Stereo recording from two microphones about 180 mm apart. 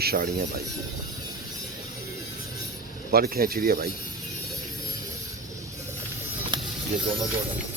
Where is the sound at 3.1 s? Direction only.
55° right (ahead or behind).